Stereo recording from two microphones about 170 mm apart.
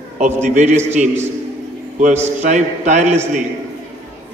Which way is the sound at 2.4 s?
45° right (ahead or behind).